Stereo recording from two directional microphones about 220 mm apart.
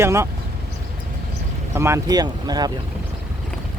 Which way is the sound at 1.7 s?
10° right (ahead or behind).